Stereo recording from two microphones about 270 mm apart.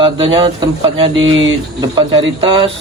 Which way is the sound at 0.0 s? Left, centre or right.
Centre.